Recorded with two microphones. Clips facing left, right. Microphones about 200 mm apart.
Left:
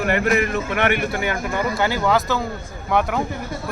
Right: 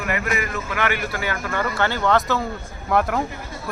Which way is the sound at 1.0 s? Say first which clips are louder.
Left 3 dB; 20° left (ahead or behind).